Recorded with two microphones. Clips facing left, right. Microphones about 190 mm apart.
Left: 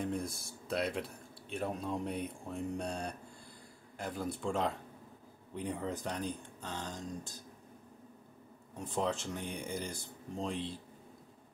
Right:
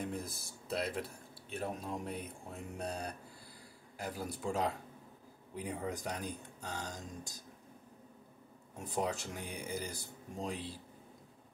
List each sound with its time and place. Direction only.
0.0 s speech: 5° right (ahead or behind)
8.7 s speech: 10° right (ahead or behind)